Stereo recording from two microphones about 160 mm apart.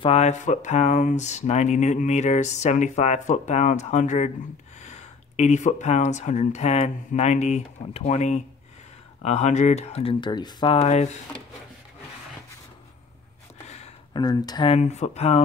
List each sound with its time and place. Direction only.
0.0 s speech: 40° left (ahead or behind)
14.1 s speech: 25° left (ahead or behind)
14.8 s speech: 45° left (ahead or behind)